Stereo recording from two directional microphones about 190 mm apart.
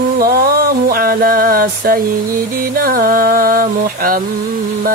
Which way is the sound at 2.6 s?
50° right (ahead or behind).